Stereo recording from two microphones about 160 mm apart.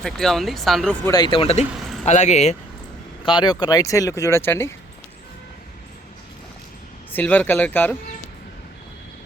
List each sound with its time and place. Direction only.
0.0 s speech: centre (ahead or behind)
1.0 s speech: 25° left (ahead or behind); by 2.6 s 45° left (ahead or behind)
3.2 s speech: 30° left (ahead or behind)
7.1 s speech: 10° left (ahead or behind)